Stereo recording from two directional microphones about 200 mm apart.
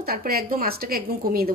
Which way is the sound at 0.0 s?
50° right (ahead or behind).